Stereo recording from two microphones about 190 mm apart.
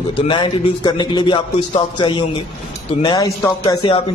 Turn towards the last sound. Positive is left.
turn(degrees=25)  # may be behind; listen again after turning